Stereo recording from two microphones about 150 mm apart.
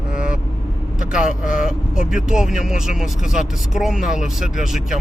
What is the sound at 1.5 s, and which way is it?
Speech, 60° left (ahead or behind).